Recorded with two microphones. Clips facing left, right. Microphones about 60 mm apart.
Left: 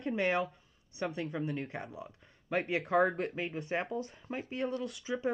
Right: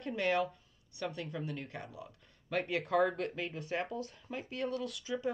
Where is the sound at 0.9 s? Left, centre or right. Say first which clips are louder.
Left 4 dB; left.